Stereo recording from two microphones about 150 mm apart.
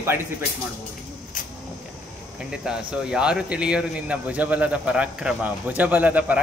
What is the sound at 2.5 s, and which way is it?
Speech, 5° right (ahead or behind).